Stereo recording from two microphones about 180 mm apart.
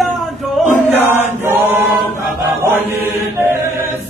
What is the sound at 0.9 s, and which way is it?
Chant, 10° right (ahead or behind).